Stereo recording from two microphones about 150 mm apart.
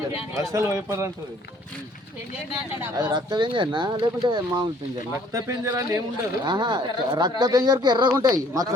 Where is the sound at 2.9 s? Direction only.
30° right (ahead or behind).